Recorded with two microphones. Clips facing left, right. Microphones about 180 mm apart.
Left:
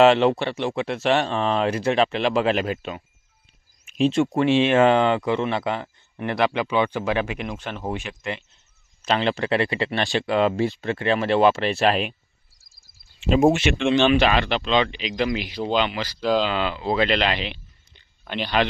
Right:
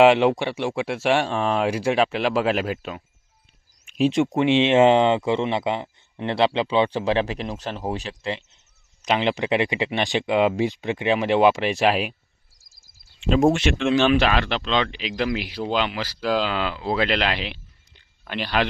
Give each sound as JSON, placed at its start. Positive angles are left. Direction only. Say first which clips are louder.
{"t": 0.0, "sound": "speech", "louder": "even", "side_deg": -10}
{"t": 3.8, "sound": "a sound", "louder": "even", "side_deg": -5}
{"t": 4.1, "sound": "speech", "louder": "even", "side_deg": -15}
{"t": 9.0, "sound": "speech", "louder": "even", "side_deg": -15}
{"t": 12.6, "sound": "a sound", "louder": "even", "side_deg": 60}
{"t": 13.2, "sound": "speech", "louder": "left 1 dB", "side_deg": 5}